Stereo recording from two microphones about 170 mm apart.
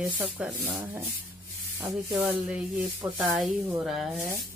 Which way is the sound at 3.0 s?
20° right (ahead or behind).